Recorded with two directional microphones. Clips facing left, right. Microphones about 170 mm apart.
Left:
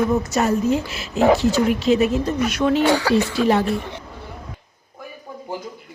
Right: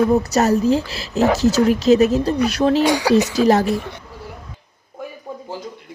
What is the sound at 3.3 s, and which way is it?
Speech, 40° right (ahead or behind).